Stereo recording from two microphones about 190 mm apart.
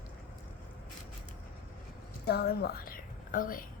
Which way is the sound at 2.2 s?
55° left (ahead or behind).